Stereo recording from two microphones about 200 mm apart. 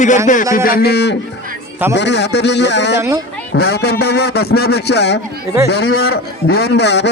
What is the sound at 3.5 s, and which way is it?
A man's voice, 55° left (ahead or behind).